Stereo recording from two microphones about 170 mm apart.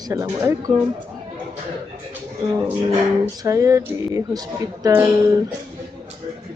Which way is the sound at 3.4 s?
20° right (ahead or behind).